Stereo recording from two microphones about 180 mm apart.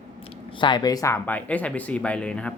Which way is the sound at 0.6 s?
25° left (ahead or behind).